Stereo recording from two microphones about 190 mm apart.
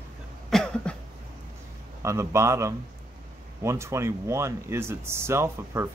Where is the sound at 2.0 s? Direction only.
15° right (ahead or behind).